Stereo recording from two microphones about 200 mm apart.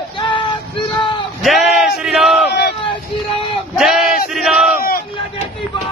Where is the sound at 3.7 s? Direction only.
Centre (ahead or behind).